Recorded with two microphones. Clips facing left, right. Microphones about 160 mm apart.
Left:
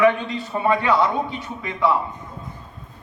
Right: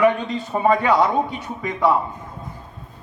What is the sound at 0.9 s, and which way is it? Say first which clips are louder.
Speech: right 2 dB; 15° right (ahead or behind).